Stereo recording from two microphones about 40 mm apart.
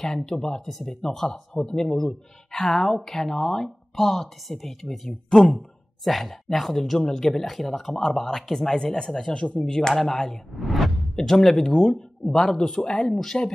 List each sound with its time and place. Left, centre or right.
0.0 s speech: centre
9.3 s speech: left
9.7 s speech: centre
10.5 s speech: centre
11.1 s speech: centre
13.2 s speech: centre